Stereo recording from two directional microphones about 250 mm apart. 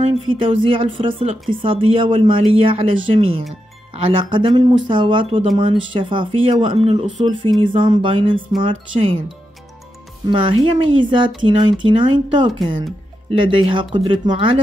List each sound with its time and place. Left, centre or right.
0.0 s speech: right
10.3 s speech: centre